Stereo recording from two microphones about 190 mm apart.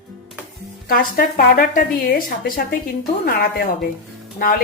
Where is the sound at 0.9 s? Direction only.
50° left (ahead or behind).